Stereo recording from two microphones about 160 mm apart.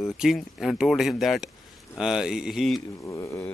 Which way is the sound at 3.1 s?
20° left (ahead or behind).